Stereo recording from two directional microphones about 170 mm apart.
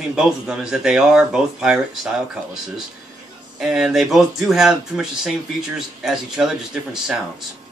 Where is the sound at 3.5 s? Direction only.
5° right (ahead or behind).